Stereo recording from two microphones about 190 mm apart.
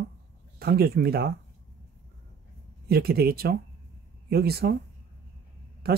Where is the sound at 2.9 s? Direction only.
55° right (ahead or behind).